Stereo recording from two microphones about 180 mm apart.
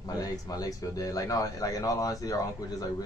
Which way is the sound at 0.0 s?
20° left (ahead or behind).